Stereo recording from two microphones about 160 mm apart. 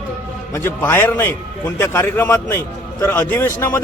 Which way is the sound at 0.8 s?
10° left (ahead or behind).